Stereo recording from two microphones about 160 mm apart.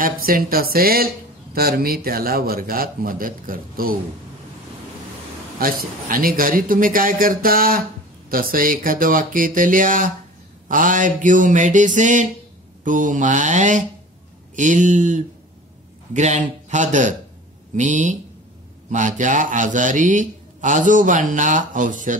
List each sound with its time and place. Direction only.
0.0 s speech: 65° right (ahead or behind)
5.6 s a man's voice: 65° right (ahead or behind)